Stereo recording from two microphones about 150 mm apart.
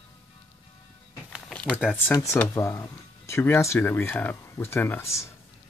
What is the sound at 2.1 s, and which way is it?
Speech, 20° left (ahead or behind).